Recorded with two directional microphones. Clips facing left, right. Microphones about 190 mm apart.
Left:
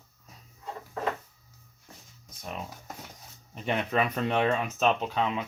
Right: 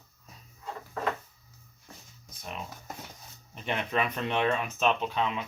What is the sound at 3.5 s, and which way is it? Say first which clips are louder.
Speech: left 3 dB; 40° left (ahead or behind).